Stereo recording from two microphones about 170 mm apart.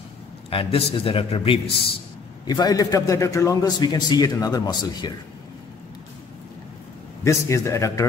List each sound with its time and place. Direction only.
0.5 s a man's voice: 35° left (ahead or behind)
2.4 s a man's voice: 25° left (ahead or behind)
7.2 s a man's voice: 15° left (ahead or behind)